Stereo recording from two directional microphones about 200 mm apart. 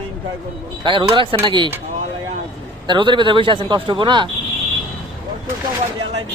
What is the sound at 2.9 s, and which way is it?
Speech, 25° right (ahead or behind).